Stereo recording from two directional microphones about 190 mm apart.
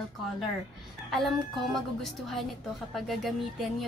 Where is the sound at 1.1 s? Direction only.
Centre (ahead or behind).